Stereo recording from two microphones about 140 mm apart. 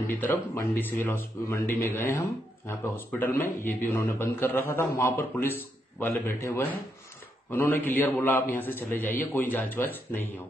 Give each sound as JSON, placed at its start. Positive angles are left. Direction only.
{"t": 0.2, "sound": "a man's voice", "side_deg": 15}